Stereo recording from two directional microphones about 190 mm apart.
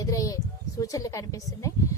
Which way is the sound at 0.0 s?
15° left (ahead or behind).